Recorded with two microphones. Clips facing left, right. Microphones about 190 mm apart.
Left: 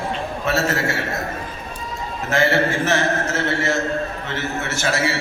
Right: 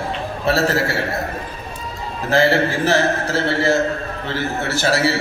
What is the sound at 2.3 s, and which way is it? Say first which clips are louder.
A man's voice: right 2 dB; 35° right (ahead or behind).